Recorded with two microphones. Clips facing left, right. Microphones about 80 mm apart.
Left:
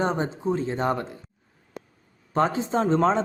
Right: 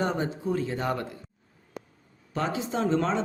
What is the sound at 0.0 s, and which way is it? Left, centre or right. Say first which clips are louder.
Speech: left 3 dB; left.